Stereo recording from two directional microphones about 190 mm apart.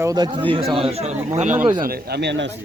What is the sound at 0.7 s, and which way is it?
Speech, 30° right (ahead or behind).